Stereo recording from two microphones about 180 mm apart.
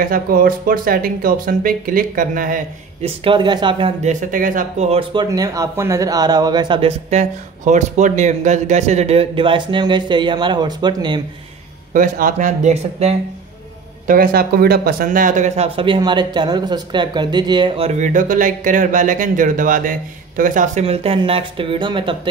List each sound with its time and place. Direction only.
0.0 s speech: 50° right (ahead or behind)
3.0 s speech: 30° right (ahead or behind)
4.0 s speech: 45° right (ahead or behind)
5.3 s speech: 20° right (ahead or behind)
7.1 s speech: 40° right (ahead or behind); by 11.1 s 25° right (ahead or behind)
11.9 s speech: 50° right (ahead or behind)
14.0 s speech: 50° right (ahead or behind); by 22.3 s 30° right (ahead or behind)